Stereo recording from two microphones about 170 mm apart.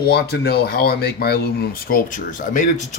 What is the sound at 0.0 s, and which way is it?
Speech, 70° left (ahead or behind).